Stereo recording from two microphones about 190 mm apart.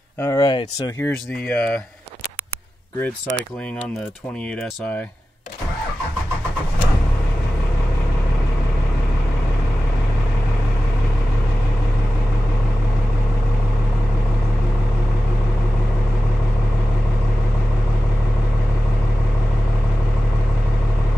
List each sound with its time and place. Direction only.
0.2 s speech: 20° left (ahead or behind)
0.9 s speech: 10° left (ahead or behind)